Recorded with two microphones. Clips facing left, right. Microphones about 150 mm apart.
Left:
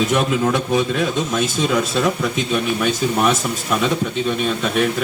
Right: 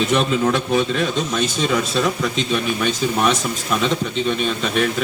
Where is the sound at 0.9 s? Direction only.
10° left (ahead or behind).